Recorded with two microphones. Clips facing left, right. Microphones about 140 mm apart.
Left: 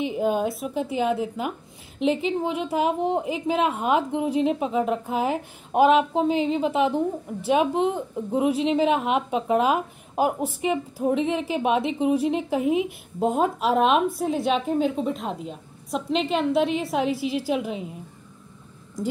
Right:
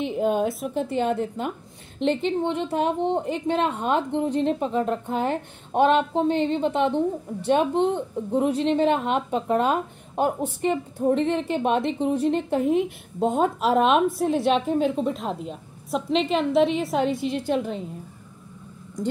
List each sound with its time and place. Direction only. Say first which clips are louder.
0.0 s a woman's voice: right 1 dB; centre (ahead or behind)